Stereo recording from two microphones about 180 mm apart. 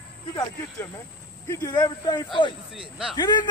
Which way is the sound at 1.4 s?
20° left (ahead or behind).